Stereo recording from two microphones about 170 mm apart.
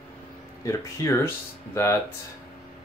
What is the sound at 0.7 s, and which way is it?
Speech, 15° left (ahead or behind).